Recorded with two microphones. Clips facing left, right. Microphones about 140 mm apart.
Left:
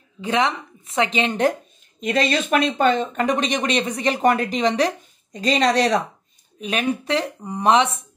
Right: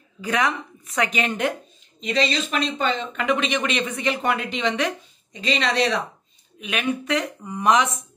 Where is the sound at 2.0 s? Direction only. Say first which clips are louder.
Left 3 dB; 50° left (ahead or behind).